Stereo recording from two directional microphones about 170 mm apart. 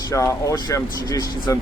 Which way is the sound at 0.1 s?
20° left (ahead or behind).